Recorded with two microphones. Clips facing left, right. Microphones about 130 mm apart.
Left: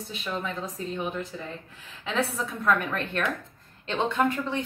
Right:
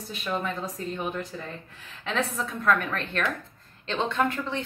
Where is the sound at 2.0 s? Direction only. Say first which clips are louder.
Left 1 dB; 5° left (ahead or behind).